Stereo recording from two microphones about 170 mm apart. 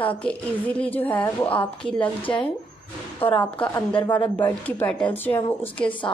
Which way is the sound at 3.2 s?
30° left (ahead or behind).